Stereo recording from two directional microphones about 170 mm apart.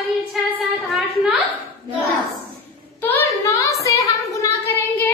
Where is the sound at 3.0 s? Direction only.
15° left (ahead or behind).